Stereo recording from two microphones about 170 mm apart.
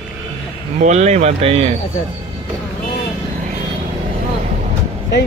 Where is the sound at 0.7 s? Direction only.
45° right (ahead or behind).